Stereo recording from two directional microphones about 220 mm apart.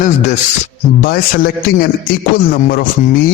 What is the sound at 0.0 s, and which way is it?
A man's voice, 35° left (ahead or behind).